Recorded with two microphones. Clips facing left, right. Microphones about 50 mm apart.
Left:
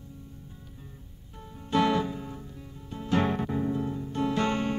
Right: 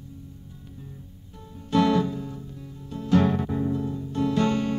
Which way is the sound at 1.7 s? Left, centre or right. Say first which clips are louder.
Right 3 dB; centre.